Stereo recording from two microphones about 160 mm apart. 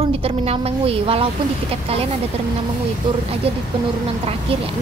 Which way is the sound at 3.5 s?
35° right (ahead or behind).